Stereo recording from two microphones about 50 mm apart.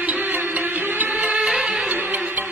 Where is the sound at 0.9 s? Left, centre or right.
Right.